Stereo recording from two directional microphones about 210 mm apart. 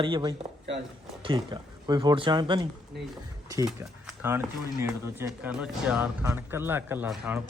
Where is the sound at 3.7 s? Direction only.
5° right (ahead or behind).